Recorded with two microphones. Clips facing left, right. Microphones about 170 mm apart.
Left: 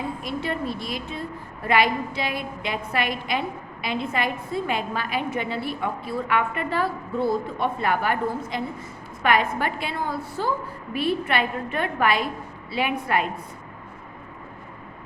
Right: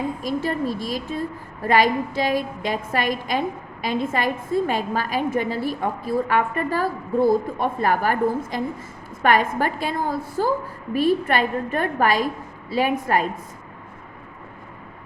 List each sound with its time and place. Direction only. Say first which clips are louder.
0.2 s a woman's voice: right 4 dB; 40° right (ahead or behind)